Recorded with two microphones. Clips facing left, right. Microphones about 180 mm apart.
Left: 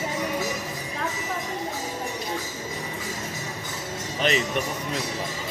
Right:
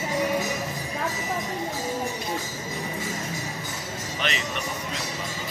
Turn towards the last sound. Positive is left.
turn(degrees=40)  # may be behind; listen again after turning